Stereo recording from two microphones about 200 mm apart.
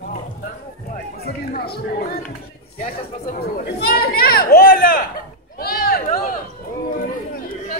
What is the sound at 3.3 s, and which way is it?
Speech, 50° left (ahead or behind).